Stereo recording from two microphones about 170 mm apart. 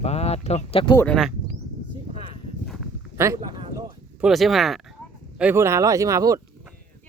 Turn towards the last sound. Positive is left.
turn(degrees=-20)  # may be behind; listen again after turning